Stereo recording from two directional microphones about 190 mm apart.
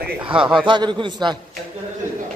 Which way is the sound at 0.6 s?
25° right (ahead or behind).